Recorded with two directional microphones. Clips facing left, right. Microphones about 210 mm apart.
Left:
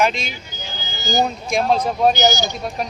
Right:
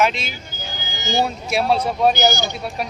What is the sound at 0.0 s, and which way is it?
A man's voice, 5° right (ahead or behind).